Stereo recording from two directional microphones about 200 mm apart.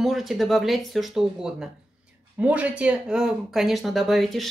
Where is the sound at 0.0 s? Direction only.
Centre (ahead or behind).